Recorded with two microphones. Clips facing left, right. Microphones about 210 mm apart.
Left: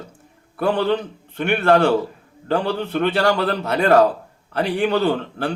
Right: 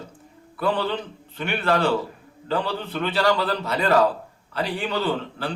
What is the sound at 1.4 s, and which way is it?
A man's voice, 55° left (ahead or behind).